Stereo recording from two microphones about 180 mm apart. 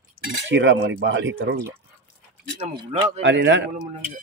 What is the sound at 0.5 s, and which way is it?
Speech, 90° right.